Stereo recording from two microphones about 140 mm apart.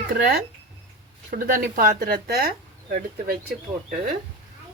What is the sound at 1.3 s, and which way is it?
Speech, 90° right.